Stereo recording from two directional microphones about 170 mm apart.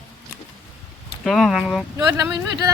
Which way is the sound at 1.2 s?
5° left (ahead or behind).